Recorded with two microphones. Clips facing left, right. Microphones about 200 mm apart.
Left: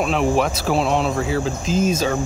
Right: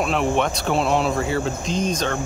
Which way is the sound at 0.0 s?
Centre (ahead or behind).